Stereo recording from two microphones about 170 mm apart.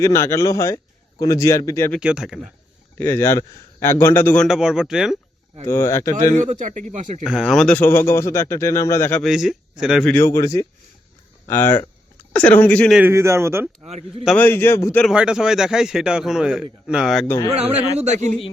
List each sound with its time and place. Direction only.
0.0 s speech: 15° left (ahead or behind)
2.0 s a man's voice: 5° right (ahead or behind)
3.0 s a man's voice: 15° left (ahead or behind)
4.4 s a man's voice: 5° right (ahead or behind)
5.6 s a man's voice: 15° left (ahead or behind)
6.3 s speech: 45° right (ahead or behind)
7.3 s a man's voice: centre (ahead or behind)
9.2 s a man's voice: centre (ahead or behind)
10.1 s a man's voice: 15° left (ahead or behind)
12.9 s speech: 10° right (ahead or behind)
14.3 s a man's voice: 10° left (ahead or behind)
15.0 s a man's voice: 5° right (ahead or behind)
17.2 s a man's voice: 15° left (ahead or behind)
17.5 s speech: 40° right (ahead or behind)